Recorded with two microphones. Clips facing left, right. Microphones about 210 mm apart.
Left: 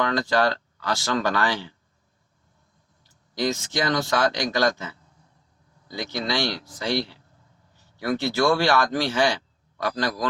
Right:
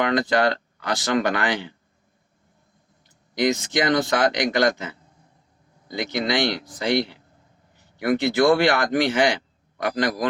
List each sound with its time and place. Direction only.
0.0 s speech: 20° right (ahead or behind)
3.3 s speech: 15° right (ahead or behind)
5.9 s speech: 20° right (ahead or behind)